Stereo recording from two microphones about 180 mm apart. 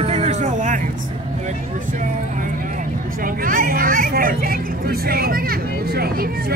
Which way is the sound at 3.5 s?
50° right (ahead or behind).